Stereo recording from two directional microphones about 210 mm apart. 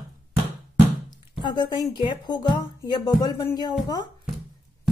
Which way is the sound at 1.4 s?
20° left (ahead or behind).